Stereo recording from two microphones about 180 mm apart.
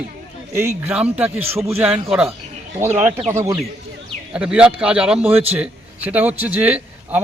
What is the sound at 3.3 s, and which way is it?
A man's voice, 15° right (ahead or behind).